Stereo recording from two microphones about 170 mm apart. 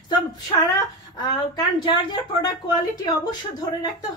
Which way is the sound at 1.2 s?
25° left (ahead or behind).